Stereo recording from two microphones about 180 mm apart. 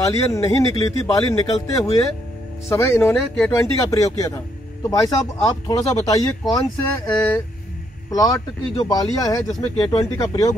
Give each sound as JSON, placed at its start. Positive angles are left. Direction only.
{"t": 0.0, "sound": "speech", "side_deg": 15}
{"t": 3.2, "sound": "speech", "side_deg": 0}
{"t": 3.7, "sound": "speech", "side_deg": 20}